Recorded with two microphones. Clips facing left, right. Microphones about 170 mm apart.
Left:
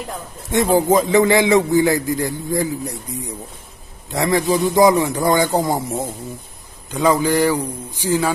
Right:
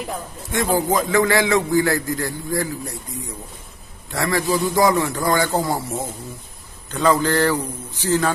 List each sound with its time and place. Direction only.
0.5 s a man's voice: 20° left (ahead or behind)
4.1 s a man's voice: 20° left (ahead or behind)